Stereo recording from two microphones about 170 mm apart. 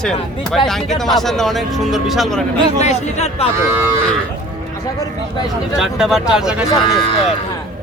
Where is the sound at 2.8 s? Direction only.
40° left (ahead or behind).